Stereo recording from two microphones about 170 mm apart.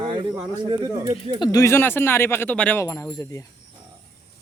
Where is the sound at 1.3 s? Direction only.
25° left (ahead or behind).